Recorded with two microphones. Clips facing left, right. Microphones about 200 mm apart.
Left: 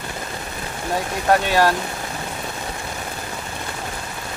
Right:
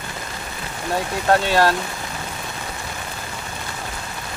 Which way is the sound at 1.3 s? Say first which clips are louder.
Even; 15° left (ahead or behind).